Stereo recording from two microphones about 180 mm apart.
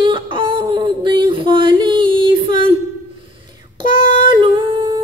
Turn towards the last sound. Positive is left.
turn(degrees=-25)  # may be behind; listen again after turning